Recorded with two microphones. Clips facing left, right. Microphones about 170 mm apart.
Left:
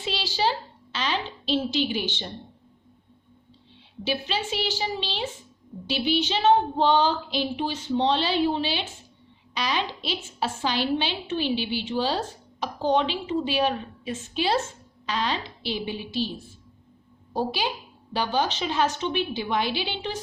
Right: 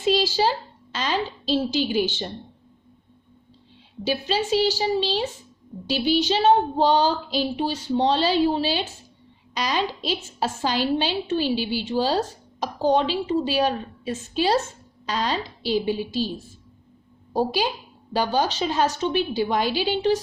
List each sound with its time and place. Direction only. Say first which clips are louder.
0.0 s a child's voice: right 6 dB; 45° right (ahead or behind)
4.0 s a woman's voice: right 4 dB; 40° right (ahead or behind)
17.3 s a woman's voice: right 4 dB; 40° right (ahead or behind)